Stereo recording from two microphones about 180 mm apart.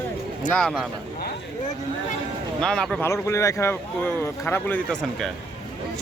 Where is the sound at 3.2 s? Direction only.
15° left (ahead or behind).